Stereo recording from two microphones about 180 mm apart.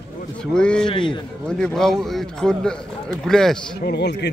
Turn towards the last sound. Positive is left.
turn(degrees=70)  # may be behind; listen again after turning